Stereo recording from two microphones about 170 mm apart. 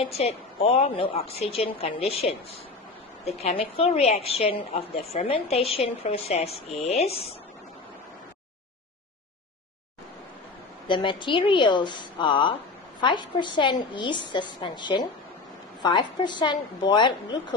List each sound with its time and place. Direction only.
0.2 s a woman's voice: 40° left (ahead or behind)
10.9 s a woman's voice: 30° left (ahead or behind)